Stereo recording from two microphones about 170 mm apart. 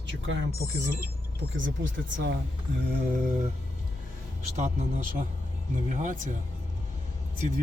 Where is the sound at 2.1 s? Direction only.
90° right.